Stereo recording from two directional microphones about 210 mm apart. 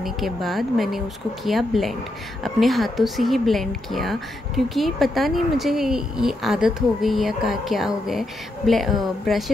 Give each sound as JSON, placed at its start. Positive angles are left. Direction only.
{"t": 0.0, "sound": "a woman's voice", "side_deg": 0}